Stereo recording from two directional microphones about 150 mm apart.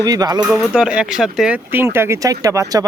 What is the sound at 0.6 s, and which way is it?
Speech, 5° right (ahead or behind).